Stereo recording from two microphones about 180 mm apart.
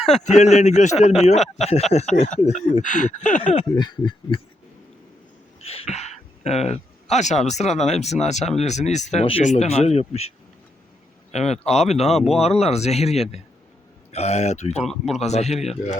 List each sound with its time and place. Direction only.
0.3 s speech: 40° left (ahead or behind)
3.7 s snicker: 25° left (ahead or behind)
5.6 s speech: 35° left (ahead or behind)